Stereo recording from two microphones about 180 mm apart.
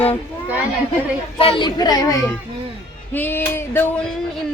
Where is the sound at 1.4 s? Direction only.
30° left (ahead or behind).